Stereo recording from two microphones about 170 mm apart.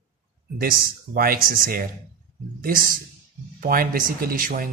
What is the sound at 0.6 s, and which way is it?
A woman's voice, 60° right (ahead or behind).